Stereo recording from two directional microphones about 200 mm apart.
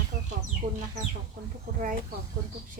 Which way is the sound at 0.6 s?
45° right (ahead or behind).